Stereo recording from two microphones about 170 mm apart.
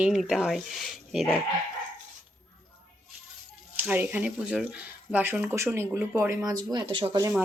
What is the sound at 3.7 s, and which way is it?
Speech, 10° right (ahead or behind).